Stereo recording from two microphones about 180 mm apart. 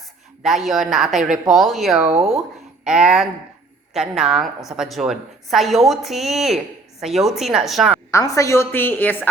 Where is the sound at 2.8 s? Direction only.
5° right (ahead or behind).